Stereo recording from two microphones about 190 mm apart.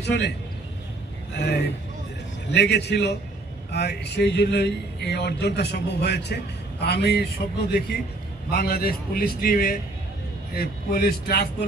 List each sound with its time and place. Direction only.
0.0 s a man's voice: 60° left (ahead or behind)
1.3 s a man's voice: 60° left (ahead or behind)